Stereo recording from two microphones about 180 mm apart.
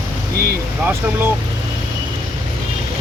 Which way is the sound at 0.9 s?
10° right (ahead or behind).